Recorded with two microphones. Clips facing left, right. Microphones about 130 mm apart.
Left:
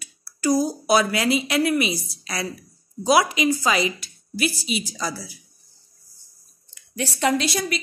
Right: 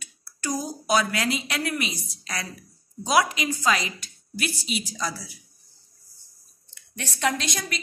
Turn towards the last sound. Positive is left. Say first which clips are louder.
# left 6 dB
turn(degrees=5)  # may be behind; listen again after turning